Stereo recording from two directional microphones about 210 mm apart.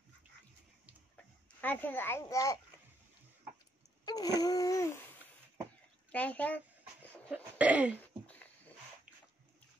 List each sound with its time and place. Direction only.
1.1 s a child's voice: 10° left (ahead or behind)
4.0 s babbling: 20° left (ahead or behind)
6.1 s speech: 5° left (ahead or behind)
7.5 s cough: 5° right (ahead or behind)
8.0 s a sound: 5° left (ahead or behind)